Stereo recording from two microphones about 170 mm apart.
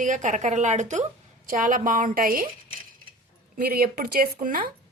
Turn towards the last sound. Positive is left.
turn(degrees=-55)  # may be behind; listen again after turning